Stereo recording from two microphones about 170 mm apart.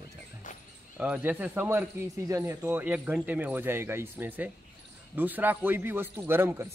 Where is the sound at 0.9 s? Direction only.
5° right (ahead or behind).